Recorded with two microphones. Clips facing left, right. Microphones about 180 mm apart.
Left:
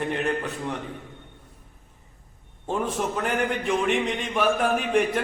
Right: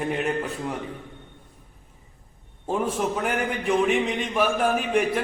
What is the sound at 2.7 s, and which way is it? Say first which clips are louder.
A man's voice: right 2 dB; 5° right (ahead or behind).